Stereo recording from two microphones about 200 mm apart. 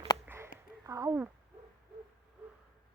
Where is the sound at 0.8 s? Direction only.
15° right (ahead or behind).